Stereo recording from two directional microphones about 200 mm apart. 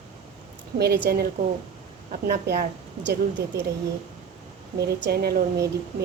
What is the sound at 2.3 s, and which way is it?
Speech, 50° right (ahead or behind).